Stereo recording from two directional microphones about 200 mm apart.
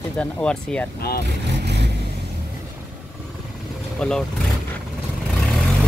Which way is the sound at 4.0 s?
5° left (ahead or behind).